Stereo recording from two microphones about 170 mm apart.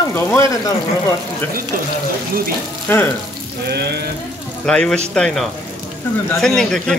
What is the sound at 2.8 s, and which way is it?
Speech, 10° left (ahead or behind).